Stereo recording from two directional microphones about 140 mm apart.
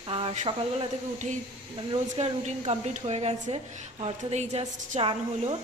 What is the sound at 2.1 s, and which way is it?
A woman's voice, 50° right (ahead or behind).